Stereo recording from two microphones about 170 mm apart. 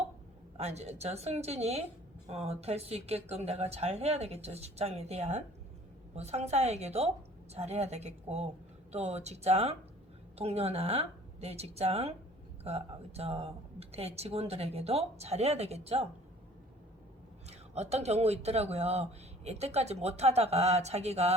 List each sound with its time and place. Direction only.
0.5 s speech: 40° right (ahead or behind)
17.7 s speech: 40° right (ahead or behind)